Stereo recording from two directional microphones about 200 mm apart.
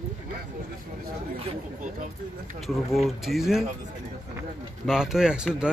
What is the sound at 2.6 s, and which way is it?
Speech, centre (ahead or behind).